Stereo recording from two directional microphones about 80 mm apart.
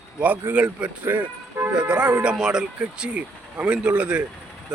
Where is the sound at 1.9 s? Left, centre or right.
Centre.